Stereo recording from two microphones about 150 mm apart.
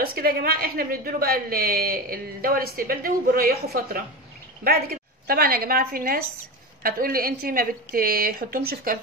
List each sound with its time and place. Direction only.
0.0 s a woman's voice: 85° right